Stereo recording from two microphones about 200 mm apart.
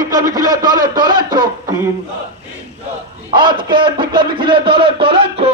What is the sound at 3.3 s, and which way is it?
A man's voice, 20° right (ahead or behind).